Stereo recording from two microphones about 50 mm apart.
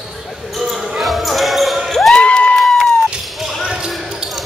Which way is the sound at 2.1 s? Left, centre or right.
Centre.